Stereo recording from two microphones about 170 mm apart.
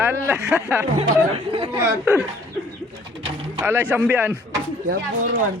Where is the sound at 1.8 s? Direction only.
15° right (ahead or behind).